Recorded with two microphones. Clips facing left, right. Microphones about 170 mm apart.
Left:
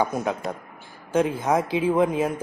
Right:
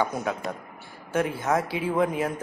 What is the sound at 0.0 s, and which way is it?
Speech, 15° left (ahead or behind).